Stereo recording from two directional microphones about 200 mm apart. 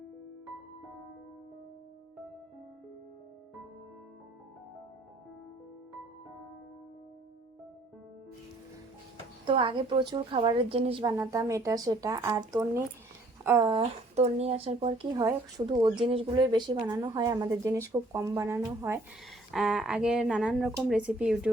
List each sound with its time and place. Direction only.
9.5 s a woman's voice: 25° right (ahead or behind)
13.7 s a woman's voice: 30° right (ahead or behind); by 18.9 s 15° right (ahead or behind)
19.5 s speech: centre (ahead or behind)